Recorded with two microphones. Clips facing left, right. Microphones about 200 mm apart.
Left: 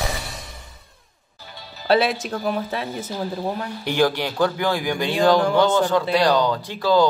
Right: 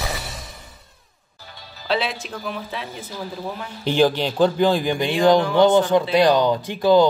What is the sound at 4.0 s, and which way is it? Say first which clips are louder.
Speech: right 3 dB; 15° right (ahead or behind).